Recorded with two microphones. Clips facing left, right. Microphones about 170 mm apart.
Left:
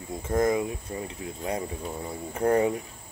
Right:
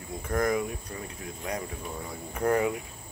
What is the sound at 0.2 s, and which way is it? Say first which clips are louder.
Speech: left 3 dB; 25° left (ahead or behind).